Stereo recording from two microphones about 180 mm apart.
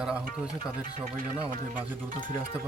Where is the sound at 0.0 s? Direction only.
5° right (ahead or behind).